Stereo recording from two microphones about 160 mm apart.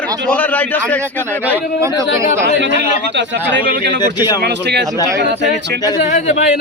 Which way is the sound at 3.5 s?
90° right.